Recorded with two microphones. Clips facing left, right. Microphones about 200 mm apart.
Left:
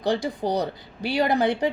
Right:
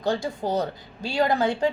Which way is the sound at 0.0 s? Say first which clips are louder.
Left 1 dB; 15° left (ahead or behind).